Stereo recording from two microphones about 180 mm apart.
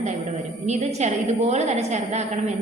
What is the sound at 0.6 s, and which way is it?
A woman's voice, 40° right (ahead or behind).